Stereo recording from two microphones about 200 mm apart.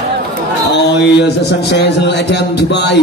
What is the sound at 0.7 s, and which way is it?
A man's voice, 60° left (ahead or behind).